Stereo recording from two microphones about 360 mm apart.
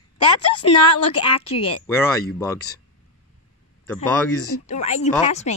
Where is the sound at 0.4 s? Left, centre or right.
Left.